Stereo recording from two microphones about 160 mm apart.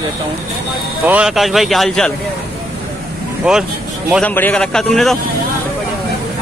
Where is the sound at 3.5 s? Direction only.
5° right (ahead or behind).